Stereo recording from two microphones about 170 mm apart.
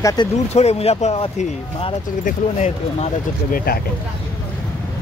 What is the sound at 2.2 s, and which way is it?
Speech, 45° left (ahead or behind).